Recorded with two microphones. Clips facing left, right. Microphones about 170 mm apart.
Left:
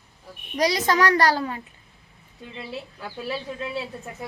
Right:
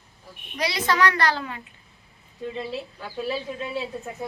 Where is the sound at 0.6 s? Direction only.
40° left (ahead or behind).